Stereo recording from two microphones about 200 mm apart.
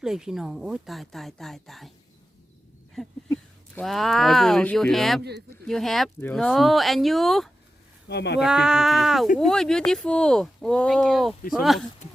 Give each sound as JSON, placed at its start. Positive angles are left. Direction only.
{"t": 0.0, "sound": "speech", "side_deg": -5}
{"t": 2.9, "sound": "a sound", "side_deg": 0}
{"t": 3.8, "sound": "speech", "side_deg": 0}
{"t": 8.0, "sound": "speech", "side_deg": 55}
{"t": 8.4, "sound": "speech", "side_deg": -5}